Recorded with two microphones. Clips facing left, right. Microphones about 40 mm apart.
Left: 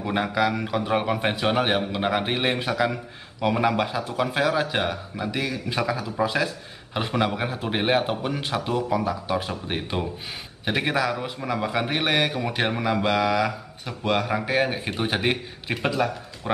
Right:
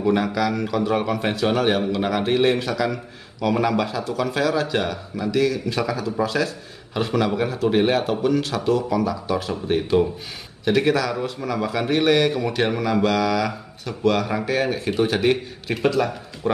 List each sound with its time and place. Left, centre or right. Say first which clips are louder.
0.1 s a man's voice: left 1 dB; centre